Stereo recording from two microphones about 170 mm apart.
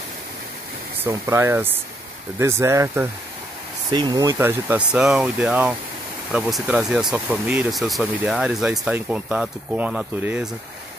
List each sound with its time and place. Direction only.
1.0 s speech: 15° right (ahead or behind)